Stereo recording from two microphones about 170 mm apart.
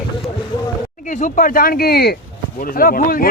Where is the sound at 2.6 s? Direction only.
55° left (ahead or behind).